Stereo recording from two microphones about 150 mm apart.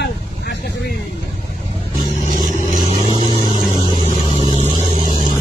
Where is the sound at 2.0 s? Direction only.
60° right (ahead or behind).